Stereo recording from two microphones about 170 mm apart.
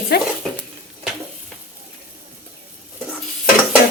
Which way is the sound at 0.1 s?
70° left (ahead or behind).